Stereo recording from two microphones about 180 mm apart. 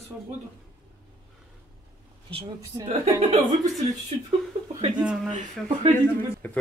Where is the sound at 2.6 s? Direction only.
20° right (ahead or behind).